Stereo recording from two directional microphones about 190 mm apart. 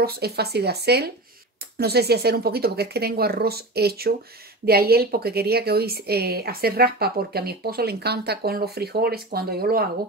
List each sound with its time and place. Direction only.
0.0 s a woman's voice: 55° right (ahead or behind)